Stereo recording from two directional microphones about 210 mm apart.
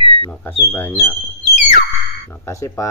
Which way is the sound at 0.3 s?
10° left (ahead or behind).